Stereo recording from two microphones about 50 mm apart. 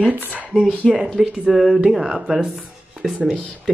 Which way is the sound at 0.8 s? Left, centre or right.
Centre.